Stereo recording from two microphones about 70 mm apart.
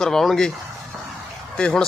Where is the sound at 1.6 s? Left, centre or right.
Centre.